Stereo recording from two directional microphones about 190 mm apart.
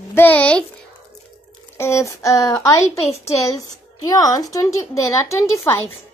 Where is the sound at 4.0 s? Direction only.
20° left (ahead or behind).